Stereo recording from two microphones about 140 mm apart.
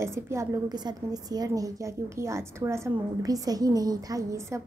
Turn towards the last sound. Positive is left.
turn(degrees=-20)  # may be behind; listen again after turning